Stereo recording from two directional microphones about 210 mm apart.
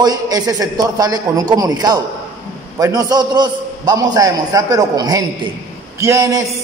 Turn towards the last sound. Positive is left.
turn(degrees=-15)  # may be behind; listen again after turning